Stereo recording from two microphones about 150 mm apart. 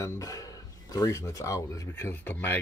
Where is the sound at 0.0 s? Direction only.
20° left (ahead or behind).